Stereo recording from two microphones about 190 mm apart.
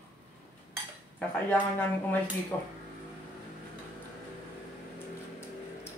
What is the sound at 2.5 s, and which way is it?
Speech, 20° left (ahead or behind).